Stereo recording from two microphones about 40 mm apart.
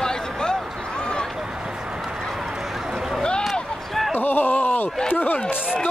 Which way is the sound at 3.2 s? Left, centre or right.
Left.